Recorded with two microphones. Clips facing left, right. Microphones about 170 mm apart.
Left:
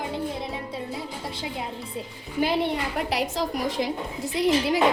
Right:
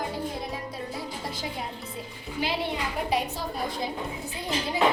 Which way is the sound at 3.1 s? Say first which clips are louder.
Left 2 dB; 90° left.